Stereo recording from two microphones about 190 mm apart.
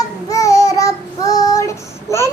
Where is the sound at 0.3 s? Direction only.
15° left (ahead or behind).